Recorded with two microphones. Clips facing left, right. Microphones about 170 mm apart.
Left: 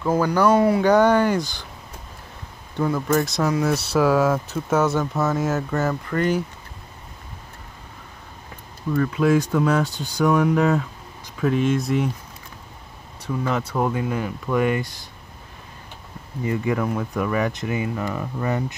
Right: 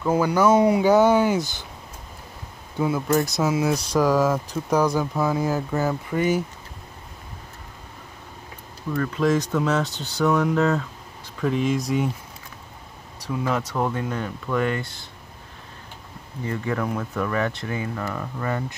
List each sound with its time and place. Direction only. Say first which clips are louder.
0.0 s speech: even; 10° right (ahead or behind)
0.8 s speech: even; 5° right (ahead or behind)
2.8 s speech: left 1 dB; 5° right (ahead or behind)
8.9 s speech: left 3 dB; 5° left (ahead or behind)
13.6 s speech: left 2 dB; 10° left (ahead or behind)
16.4 s speech: left 3 dB; 10° left (ahead or behind)